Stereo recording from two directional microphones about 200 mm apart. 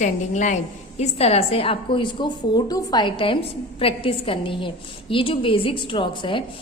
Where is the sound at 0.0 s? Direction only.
35° left (ahead or behind).